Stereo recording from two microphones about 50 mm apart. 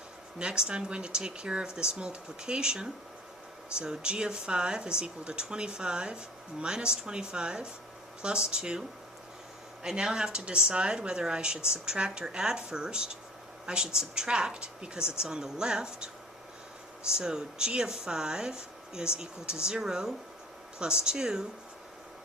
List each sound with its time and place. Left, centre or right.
0.3 s speech: centre
9.8 s speech: centre
17.1 s speech: centre